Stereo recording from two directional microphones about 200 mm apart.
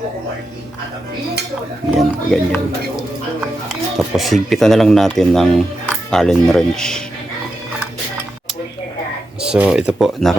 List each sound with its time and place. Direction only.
1.9 s speech: centre (ahead or behind)
9.4 s speech: 5° right (ahead or behind)